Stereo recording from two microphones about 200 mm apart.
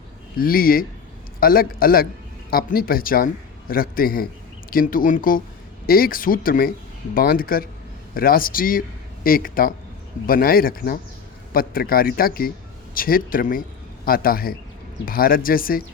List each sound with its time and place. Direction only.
0.3 s a man's voice: 45° left (ahead or behind)